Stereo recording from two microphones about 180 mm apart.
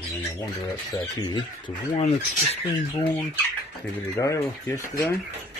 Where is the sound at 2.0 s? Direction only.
35° left (ahead or behind).